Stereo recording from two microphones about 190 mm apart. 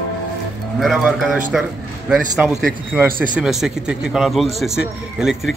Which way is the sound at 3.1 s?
50° right (ahead or behind).